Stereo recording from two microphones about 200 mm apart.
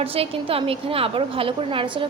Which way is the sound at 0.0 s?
30° right (ahead or behind).